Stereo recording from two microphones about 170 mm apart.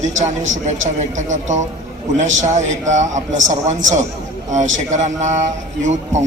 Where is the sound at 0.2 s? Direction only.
45° right (ahead or behind).